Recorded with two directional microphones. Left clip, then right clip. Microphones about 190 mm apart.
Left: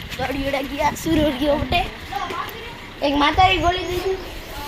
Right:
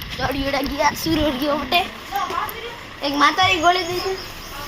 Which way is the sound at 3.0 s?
20° left (ahead or behind).